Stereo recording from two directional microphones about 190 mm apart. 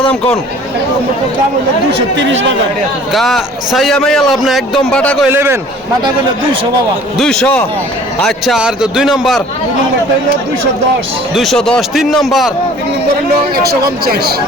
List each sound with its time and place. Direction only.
1.9 s speech: 70° right (ahead or behind)
3.1 s a man's voice: centre (ahead or behind)
5.3 s a man's voice: 10° right (ahead or behind)
7.2 s a man's voice: 5° left (ahead or behind)
11.3 s a man's voice: centre (ahead or behind)
13.7 s speech: 55° right (ahead or behind)